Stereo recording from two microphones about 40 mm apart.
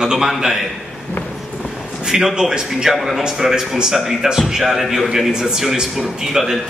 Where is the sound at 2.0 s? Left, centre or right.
Centre.